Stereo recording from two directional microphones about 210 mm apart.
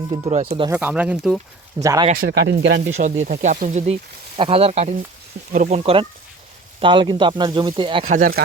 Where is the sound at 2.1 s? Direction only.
50° right (ahead or behind).